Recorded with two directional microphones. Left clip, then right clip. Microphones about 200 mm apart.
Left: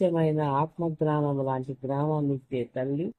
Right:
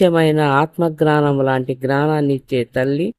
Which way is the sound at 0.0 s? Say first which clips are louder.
Right 11 dB; 55° right (ahead or behind).